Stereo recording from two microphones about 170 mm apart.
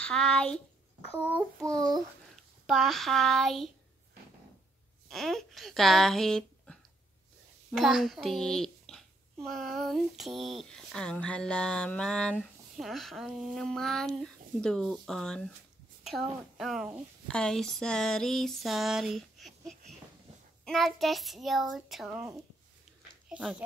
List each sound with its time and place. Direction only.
0.0 s a child's voice: 5° left (ahead or behind)
1.2 s child singing: 10° right (ahead or behind)
1.7 s a child's voice: 25° right (ahead or behind)
2.6 s a child's voice: centre (ahead or behind)
5.0 s a child's voice: centre (ahead or behind)
23.2 s a sound: 5° right (ahead or behind)